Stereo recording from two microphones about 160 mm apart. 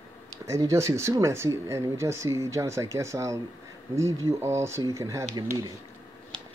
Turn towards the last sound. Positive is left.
turn(degrees=-20)  # may be behind; listen again after turning